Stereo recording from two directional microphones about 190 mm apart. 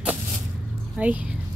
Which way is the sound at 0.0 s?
5° right (ahead or behind).